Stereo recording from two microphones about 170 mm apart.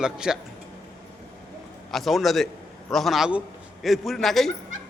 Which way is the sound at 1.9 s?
Centre (ahead or behind).